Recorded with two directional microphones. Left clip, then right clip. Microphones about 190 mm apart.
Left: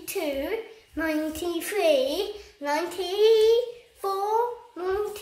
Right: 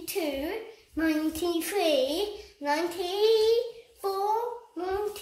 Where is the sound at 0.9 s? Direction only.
5° left (ahead or behind).